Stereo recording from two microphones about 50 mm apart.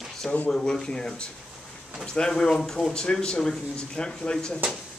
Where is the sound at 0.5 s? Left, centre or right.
Centre.